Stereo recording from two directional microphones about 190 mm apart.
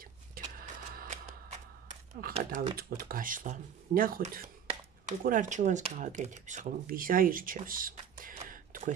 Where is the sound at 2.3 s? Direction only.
40° right (ahead or behind).